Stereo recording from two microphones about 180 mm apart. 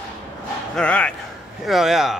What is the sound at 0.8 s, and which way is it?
Speech, 5° left (ahead or behind).